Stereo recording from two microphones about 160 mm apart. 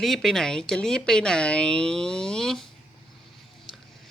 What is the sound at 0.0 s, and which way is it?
Speech, centre (ahead or behind).